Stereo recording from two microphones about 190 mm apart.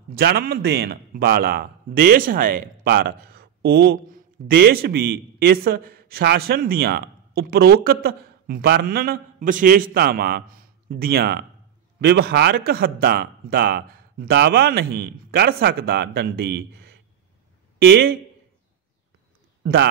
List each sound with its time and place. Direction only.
0.1 s a man's voice: 55° right (ahead or behind)
19.6 s speech: 60° right (ahead or behind)